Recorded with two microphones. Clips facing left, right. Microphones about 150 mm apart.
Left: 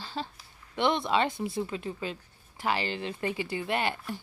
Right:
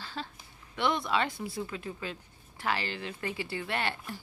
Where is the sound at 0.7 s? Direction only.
25° left (ahead or behind).